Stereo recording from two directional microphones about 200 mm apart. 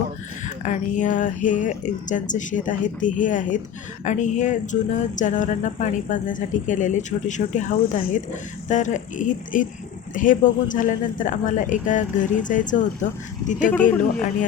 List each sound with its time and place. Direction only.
0.4 s speech: 40° left (ahead or behind)